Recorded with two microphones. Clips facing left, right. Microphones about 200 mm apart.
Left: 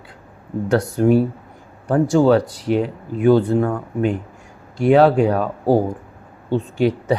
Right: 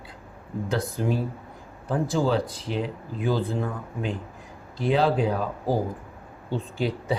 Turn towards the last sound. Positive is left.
turn(degrees=70)  # may be behind; listen again after turning